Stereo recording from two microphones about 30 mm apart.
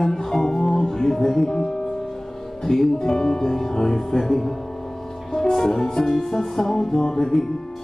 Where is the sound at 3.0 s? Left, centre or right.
Left.